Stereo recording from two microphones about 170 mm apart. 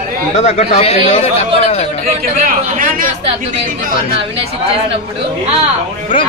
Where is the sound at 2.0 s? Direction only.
55° right (ahead or behind).